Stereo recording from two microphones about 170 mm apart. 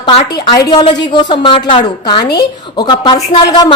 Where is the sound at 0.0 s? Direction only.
25° left (ahead or behind).